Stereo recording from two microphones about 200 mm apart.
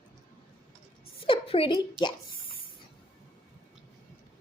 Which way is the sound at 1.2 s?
25° left (ahead or behind).